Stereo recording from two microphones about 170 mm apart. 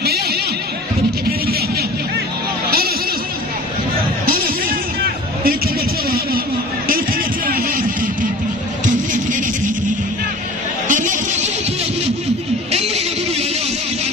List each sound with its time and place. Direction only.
0.0 s music: 70° right (ahead or behind)
4.3 s music: 60° right (ahead or behind)
6.0 s a sound: 60° right (ahead or behind)
7.4 s music: 60° right (ahead or behind)
10.9 s a sound: 50° right (ahead or behind)
12.7 s music: 35° right (ahead or behind)